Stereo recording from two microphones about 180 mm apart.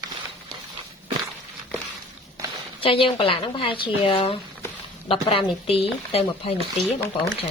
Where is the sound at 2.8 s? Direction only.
30° left (ahead or behind).